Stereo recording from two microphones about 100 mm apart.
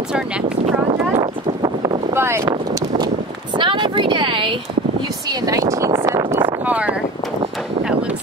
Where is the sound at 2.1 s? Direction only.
25° right (ahead or behind).